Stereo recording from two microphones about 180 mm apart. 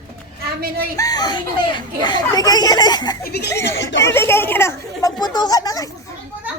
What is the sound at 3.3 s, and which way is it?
Speech, 65° left (ahead or behind).